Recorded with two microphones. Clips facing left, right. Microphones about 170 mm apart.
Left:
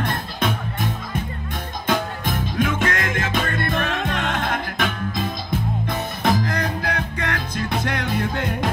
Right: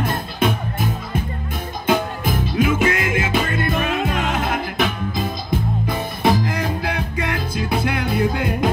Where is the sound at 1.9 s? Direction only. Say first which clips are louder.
Right 4 dB; 10° right (ahead or behind).